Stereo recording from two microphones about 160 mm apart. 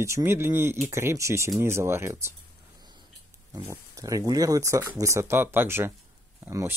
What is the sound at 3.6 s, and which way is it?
Speech, 20° right (ahead or behind).